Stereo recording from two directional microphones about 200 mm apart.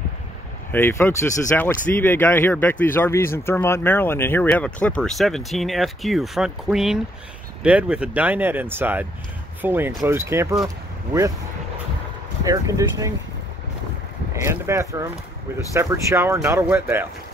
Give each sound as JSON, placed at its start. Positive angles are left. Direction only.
{"t": 0.7, "sound": "speech", "side_deg": 10}
{"t": 12.4, "sound": "speech", "side_deg": -15}
{"t": 14.3, "sound": "speech", "side_deg": -15}